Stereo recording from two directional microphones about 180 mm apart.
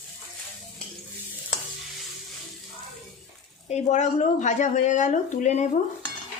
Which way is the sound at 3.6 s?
40° left (ahead or behind).